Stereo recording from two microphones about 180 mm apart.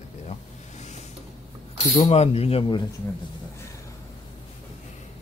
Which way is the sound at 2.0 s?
35° left (ahead or behind).